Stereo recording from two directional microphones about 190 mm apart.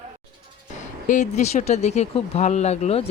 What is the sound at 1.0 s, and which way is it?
Speech, 40° left (ahead or behind).